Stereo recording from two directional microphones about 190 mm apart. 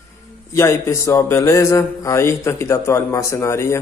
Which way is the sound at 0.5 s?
15° left (ahead or behind).